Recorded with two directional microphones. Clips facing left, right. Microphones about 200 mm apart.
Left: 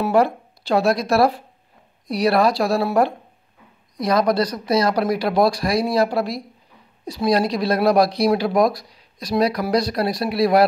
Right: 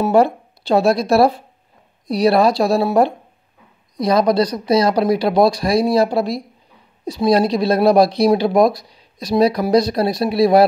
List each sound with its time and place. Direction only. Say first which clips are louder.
0.0 s speech: right 3 dB; 25° right (ahead or behind)